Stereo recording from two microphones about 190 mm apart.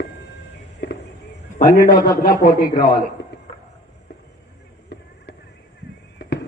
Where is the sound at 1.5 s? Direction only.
50° left (ahead or behind).